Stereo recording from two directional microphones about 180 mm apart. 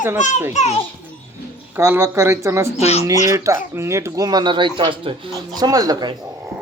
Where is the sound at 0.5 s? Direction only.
35° left (ahead or behind).